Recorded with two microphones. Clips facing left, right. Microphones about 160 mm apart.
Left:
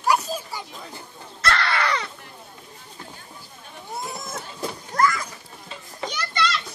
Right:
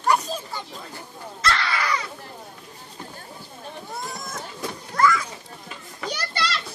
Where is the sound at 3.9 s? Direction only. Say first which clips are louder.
Left 3 dB; 25° left (ahead or behind).